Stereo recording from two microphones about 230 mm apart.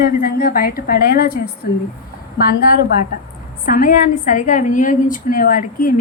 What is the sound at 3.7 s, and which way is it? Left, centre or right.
A woman's voice, left.